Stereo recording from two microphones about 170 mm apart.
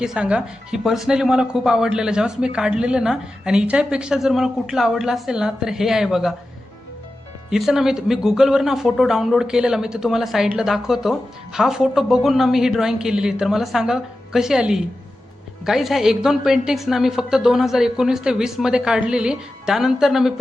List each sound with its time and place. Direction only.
0.0 s speech: 5° right (ahead or behind)
7.5 s speech: centre (ahead or behind)